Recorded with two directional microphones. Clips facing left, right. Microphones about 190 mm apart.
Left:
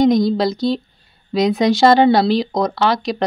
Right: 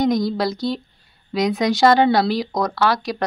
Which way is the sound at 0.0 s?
20° left (ahead or behind).